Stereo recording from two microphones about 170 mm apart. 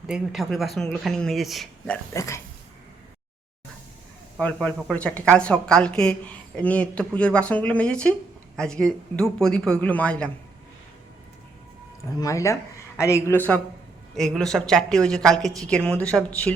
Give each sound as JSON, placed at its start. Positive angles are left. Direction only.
{"t": 0.1, "sound": "a woman's voice", "side_deg": 0}
{"t": 2.1, "sound": "speech", "side_deg": 20}
{"t": 4.4, "sound": "a woman's voice", "side_deg": 5}
{"t": 12.2, "sound": "a woman's voice", "side_deg": 20}